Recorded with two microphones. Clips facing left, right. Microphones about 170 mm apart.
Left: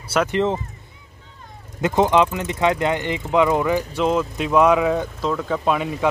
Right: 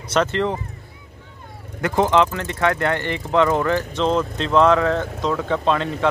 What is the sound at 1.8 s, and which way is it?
Speech, 20° left (ahead or behind).